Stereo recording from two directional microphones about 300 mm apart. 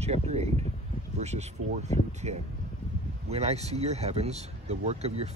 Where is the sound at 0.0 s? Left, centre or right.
Right.